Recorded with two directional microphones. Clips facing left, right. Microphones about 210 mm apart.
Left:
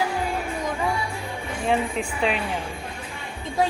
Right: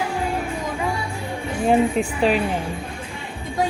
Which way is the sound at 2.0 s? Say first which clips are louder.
Right 6 dB; 40° right (ahead or behind).